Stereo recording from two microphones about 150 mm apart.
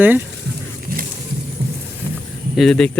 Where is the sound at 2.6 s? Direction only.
5° left (ahead or behind).